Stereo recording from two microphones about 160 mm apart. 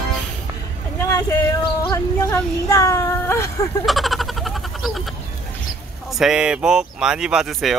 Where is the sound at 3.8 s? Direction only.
Centre (ahead or behind).